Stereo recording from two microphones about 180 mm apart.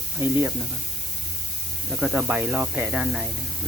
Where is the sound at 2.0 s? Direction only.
10° right (ahead or behind).